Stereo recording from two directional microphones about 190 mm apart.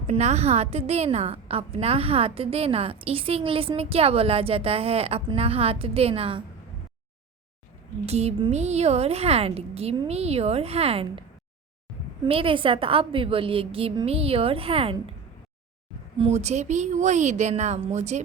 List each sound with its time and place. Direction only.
0.1 s a woman's voice: 35° right (ahead or behind)
8.0 s a woman's voice: 35° right (ahead or behind)
12.2 s a woman's voice: 30° right (ahead or behind)
16.1 s a woman's voice: 35° right (ahead or behind)